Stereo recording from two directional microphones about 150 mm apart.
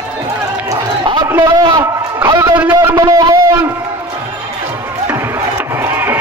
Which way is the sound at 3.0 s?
25° right (ahead or behind).